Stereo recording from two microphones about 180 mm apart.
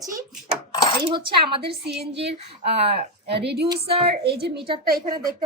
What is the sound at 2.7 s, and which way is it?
Speech, 35° right (ahead or behind).